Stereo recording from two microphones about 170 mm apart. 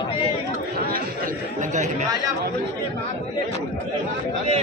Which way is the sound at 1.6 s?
45° right (ahead or behind).